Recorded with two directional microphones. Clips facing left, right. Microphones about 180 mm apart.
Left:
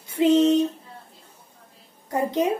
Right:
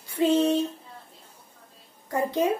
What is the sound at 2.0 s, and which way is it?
Speech, 20° left (ahead or behind).